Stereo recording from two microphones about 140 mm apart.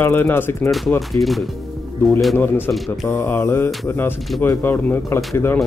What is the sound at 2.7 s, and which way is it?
A man's voice, 10° left (ahead or behind).